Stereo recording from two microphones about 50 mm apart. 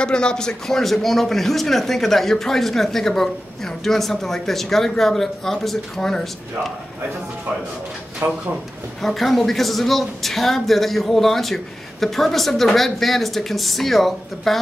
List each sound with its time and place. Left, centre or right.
0.0 s a man's voice: centre
8.2 s speech: right
9.0 s a man's voice: centre